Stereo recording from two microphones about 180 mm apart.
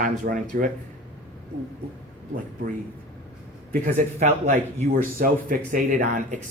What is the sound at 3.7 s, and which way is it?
Speech, 45° right (ahead or behind).